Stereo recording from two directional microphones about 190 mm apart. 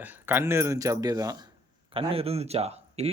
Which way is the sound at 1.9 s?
30° right (ahead or behind).